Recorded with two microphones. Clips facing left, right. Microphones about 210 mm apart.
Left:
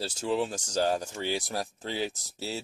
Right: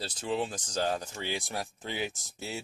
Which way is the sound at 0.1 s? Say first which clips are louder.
Left 2 dB; 45° left (ahead or behind).